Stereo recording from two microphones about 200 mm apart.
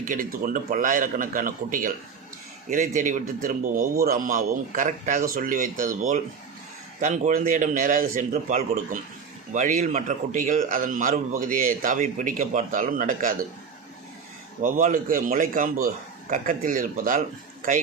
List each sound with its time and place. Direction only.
0.0 s a man's voice: 45° right (ahead or behind)
14.6 s a man's voice: 40° right (ahead or behind)